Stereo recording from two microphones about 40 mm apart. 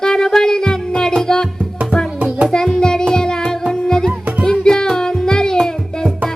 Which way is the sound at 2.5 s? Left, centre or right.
Centre.